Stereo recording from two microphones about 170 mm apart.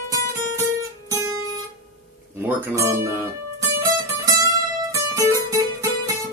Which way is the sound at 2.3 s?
15° right (ahead or behind).